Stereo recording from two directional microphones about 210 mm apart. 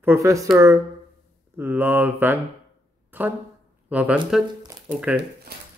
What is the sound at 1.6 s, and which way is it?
Speech, 10° right (ahead or behind).